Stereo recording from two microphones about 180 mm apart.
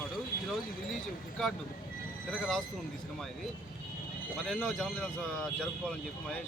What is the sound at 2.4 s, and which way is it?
Speech, centre (ahead or behind).